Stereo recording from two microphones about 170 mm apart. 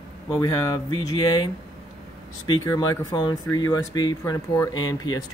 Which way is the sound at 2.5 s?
25° left (ahead or behind).